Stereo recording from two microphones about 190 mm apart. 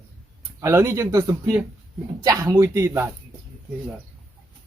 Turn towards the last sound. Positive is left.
turn(degrees=-15)  # may be behind; listen again after turning